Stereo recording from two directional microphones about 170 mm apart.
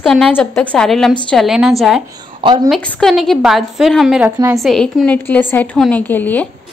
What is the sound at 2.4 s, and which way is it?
Speech, 25° right (ahead or behind).